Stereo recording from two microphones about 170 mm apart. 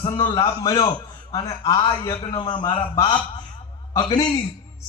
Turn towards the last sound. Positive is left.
turn(degrees=25)  # may be behind; listen again after turning